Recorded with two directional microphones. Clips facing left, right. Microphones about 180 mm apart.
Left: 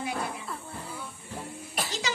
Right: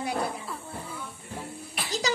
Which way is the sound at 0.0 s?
35° right (ahead or behind).